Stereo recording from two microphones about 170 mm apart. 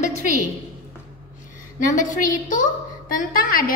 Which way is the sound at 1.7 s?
50° left (ahead or behind).